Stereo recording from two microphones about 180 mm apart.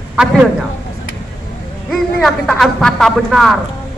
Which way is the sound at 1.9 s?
Centre (ahead or behind).